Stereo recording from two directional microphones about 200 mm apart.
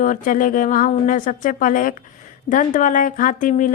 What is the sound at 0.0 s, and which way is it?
A woman's voice, 40° left (ahead or behind).